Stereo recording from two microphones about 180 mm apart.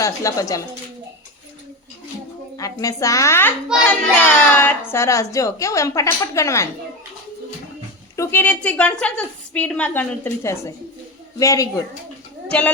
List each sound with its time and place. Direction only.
0.0 s a woman's voice: 20° left (ahead or behind)
2.6 s a woman's voice: 20° left (ahead or behind)
8.1 s a woman's voice: 15° left (ahead or behind)
12.5 s speech: 5° left (ahead or behind)